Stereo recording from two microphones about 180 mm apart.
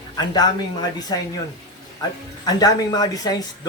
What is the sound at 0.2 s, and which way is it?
Speech, 20° left (ahead or behind).